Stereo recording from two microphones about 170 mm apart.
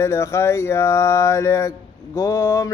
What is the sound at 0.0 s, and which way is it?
Speech, 15° left (ahead or behind).